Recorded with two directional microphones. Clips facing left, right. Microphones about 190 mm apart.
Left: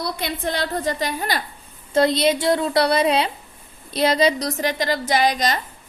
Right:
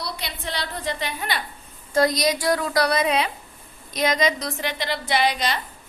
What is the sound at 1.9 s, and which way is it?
A woman's voice, 25° left (ahead or behind).